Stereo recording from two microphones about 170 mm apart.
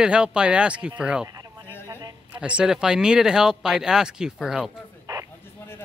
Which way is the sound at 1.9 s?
20° right (ahead or behind).